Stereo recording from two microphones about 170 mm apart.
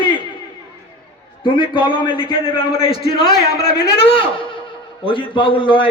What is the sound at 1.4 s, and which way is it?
A man's voice, 30° left (ahead or behind).